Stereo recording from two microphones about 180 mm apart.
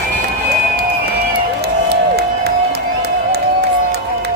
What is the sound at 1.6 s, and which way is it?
Crowd, 65° right (ahead or behind).